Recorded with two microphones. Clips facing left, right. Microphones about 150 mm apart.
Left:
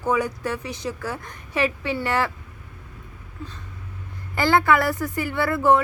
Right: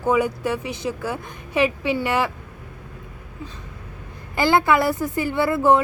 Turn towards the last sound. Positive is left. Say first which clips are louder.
# right 2 dB
turn(degrees=-20)  # may be behind; listen again after turning